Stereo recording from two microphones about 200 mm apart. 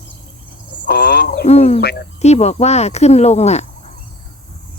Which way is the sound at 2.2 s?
35° left (ahead or behind).